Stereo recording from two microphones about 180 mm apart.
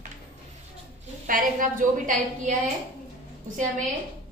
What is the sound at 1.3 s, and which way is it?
A woman's voice, 50° right (ahead or behind).